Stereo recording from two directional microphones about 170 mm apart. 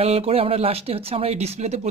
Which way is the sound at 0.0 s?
35° right (ahead or behind).